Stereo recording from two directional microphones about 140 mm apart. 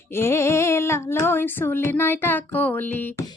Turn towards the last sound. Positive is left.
turn(degrees=15)  # may be behind; listen again after turning